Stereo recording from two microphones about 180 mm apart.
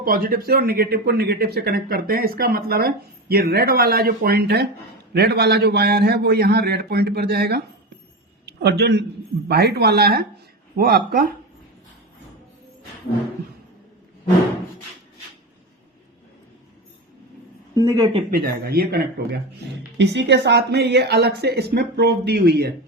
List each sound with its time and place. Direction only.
0.0 s speech: 55° right (ahead or behind)
17.7 s speech: 15° right (ahead or behind)
18.3 s speech: 60° right (ahead or behind)
20.0 s speech: 75° right (ahead or behind)